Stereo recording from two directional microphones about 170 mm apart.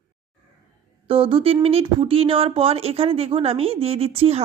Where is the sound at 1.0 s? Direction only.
35° right (ahead or behind).